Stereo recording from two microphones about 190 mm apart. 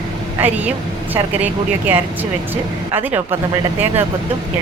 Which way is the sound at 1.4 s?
10° right (ahead or behind).